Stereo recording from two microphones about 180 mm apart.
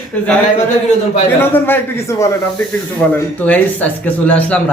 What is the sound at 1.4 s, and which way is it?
Speech, 10° left (ahead or behind).